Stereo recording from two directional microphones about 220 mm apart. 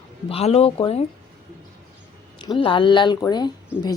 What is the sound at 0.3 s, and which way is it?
Speech, 25° left (ahead or behind).